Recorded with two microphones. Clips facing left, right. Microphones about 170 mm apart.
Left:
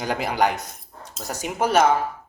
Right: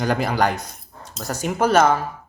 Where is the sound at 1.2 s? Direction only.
15° left (ahead or behind).